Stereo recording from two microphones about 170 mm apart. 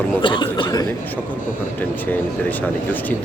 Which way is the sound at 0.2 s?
25° left (ahead or behind).